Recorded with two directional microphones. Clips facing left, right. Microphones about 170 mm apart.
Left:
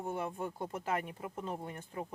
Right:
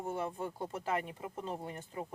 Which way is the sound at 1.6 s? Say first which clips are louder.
Even; 20° right (ahead or behind).